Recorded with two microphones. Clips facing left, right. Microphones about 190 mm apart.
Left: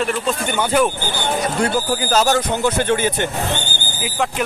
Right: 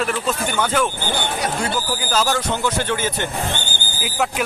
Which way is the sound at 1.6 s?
45° left (ahead or behind).